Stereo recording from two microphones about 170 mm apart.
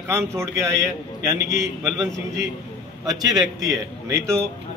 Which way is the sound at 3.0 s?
20° right (ahead or behind).